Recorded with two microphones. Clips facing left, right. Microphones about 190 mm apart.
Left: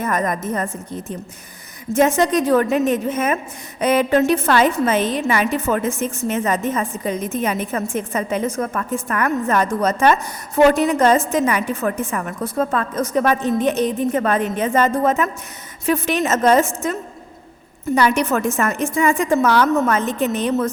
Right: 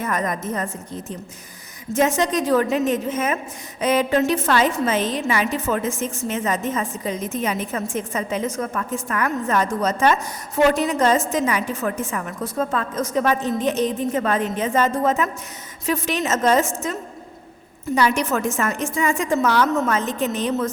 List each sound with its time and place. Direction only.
0.0 s a woman's voice: 45° left (ahead or behind)
1.9 s a woman's voice: 55° left (ahead or behind)
17.9 s a woman's voice: 60° left (ahead or behind)